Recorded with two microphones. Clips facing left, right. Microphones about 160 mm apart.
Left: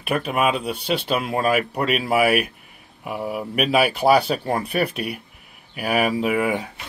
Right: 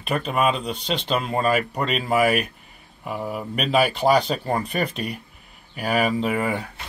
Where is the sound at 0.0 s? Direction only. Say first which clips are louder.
Left 1 dB; 5° left (ahead or behind).